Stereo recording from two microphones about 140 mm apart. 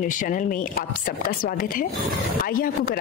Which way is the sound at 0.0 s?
70° left (ahead or behind).